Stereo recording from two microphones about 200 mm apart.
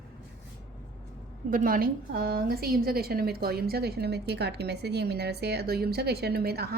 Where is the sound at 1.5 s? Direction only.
45° right (ahead or behind).